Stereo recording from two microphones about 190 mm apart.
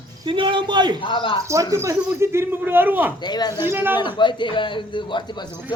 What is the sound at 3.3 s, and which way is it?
Speech, 20° left (ahead or behind).